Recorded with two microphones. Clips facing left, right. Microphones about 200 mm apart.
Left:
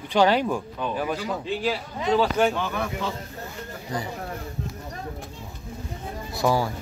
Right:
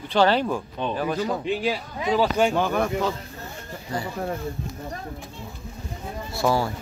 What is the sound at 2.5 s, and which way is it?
Speech, 45° right (ahead or behind).